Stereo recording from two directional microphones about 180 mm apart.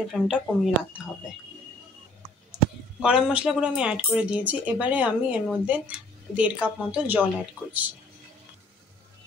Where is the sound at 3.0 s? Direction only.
5° right (ahead or behind).